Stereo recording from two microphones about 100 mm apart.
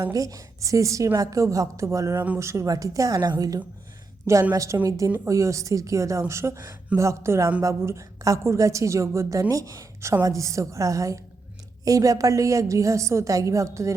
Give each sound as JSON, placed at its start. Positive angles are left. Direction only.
{"t": 0.0, "sound": "a woman's voice", "side_deg": -35}